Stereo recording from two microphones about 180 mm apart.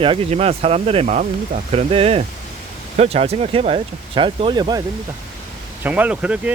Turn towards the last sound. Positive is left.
turn(degrees=-5)  # may be behind; listen again after turning